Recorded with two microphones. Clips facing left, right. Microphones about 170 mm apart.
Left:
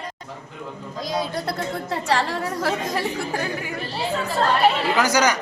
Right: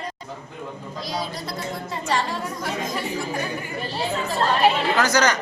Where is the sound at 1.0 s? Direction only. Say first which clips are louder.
Left 4 dB; 60° left (ahead or behind); by 3.7 s 75° left (ahead or behind).